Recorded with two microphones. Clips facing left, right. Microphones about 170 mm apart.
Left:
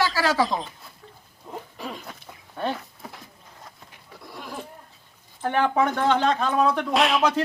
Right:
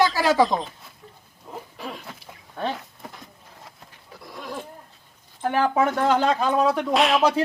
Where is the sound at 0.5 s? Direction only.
20° right (ahead or behind).